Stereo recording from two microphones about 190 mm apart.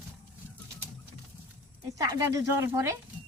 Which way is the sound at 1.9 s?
20° right (ahead or behind).